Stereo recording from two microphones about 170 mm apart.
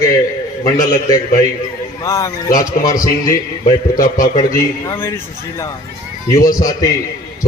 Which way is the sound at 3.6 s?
50° left (ahead or behind).